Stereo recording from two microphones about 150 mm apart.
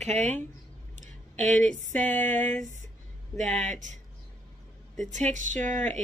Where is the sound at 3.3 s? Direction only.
50° right (ahead or behind).